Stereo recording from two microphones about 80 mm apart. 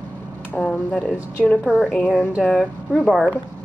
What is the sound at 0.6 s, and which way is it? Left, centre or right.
Speech, centre.